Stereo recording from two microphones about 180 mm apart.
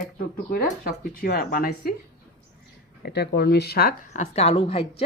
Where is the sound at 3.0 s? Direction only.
65° left (ahead or behind).